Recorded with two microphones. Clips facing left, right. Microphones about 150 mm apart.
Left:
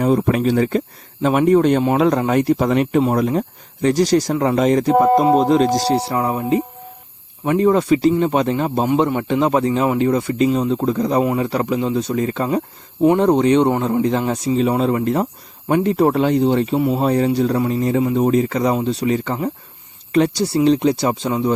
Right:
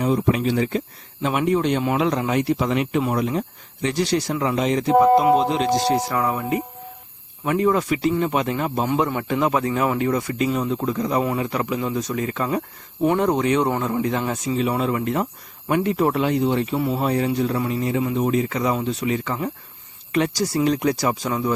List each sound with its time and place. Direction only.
0.0 s speech: 50° left (ahead or behind); by 21.5 s 25° left (ahead or behind)